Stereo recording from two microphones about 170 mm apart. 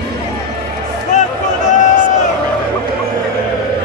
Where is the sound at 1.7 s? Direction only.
45° left (ahead or behind).